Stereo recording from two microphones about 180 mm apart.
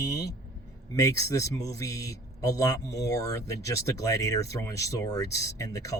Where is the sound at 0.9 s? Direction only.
20° left (ahead or behind).